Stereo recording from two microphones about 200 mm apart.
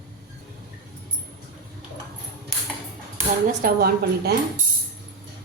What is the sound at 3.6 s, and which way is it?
Speech, 50° right (ahead or behind).